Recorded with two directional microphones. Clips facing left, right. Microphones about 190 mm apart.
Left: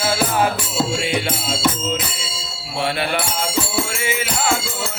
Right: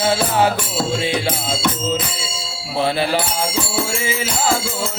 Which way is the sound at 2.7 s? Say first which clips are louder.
Right 3 dB; 35° right (ahead or behind).